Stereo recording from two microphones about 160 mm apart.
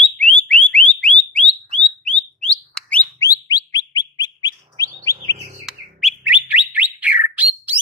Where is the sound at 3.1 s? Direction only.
20° left (ahead or behind).